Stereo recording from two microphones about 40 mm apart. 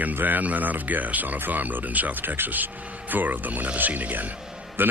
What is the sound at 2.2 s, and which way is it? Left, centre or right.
Speech, right.